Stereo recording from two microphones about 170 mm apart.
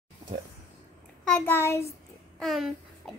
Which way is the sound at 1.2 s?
10° left (ahead or behind).